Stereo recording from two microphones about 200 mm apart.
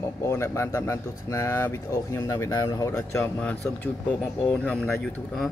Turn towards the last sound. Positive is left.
turn(degrees=5)  # may be behind; listen again after turning